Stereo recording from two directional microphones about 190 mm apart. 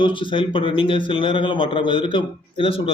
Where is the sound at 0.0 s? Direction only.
25° left (ahead or behind).